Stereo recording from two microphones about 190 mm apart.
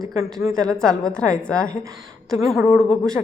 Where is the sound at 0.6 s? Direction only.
5° left (ahead or behind).